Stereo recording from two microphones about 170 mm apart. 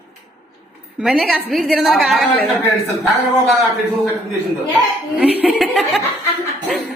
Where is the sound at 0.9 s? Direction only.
5° right (ahead or behind).